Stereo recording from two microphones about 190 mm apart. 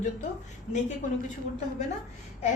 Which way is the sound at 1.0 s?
40° left (ahead or behind).